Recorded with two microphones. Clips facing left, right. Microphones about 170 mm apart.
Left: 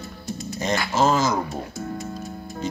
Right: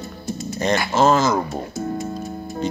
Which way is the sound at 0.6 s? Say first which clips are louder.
Right 3 dB; 65° right (ahead or behind).